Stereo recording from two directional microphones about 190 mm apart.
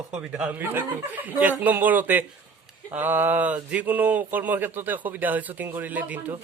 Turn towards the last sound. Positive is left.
turn(degrees=-10)  # may be behind; listen again after turning